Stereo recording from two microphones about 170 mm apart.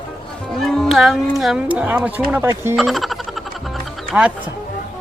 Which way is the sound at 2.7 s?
Centre (ahead or behind).